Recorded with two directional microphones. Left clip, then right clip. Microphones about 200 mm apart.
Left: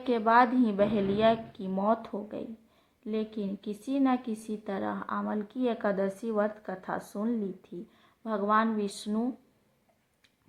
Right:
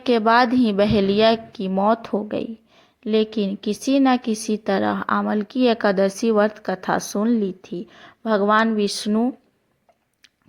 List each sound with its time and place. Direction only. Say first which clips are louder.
0.0 s a woman's voice: right 7 dB; 30° right (ahead or behind)